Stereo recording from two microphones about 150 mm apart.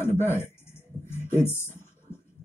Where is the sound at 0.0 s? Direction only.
15° left (ahead or behind).